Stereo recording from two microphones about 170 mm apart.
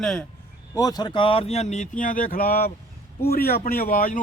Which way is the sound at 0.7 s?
20° left (ahead or behind).